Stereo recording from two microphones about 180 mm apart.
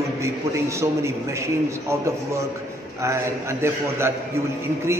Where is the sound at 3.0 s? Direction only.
15° right (ahead or behind).